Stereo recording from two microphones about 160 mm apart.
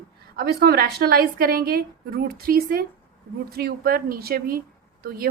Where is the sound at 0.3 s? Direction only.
75° right (ahead or behind).